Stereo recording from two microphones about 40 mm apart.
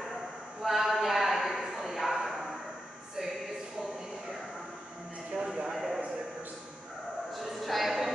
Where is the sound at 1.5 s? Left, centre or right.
Centre.